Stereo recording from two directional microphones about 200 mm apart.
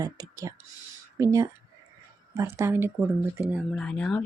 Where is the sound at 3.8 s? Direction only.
5° left (ahead or behind).